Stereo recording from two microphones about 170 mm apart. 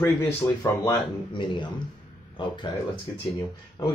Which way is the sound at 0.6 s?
25° left (ahead or behind).